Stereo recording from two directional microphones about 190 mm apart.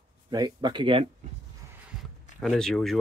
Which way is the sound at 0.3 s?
20° right (ahead or behind).